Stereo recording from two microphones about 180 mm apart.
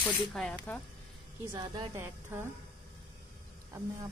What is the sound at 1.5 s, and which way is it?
Speech, 25° right (ahead or behind).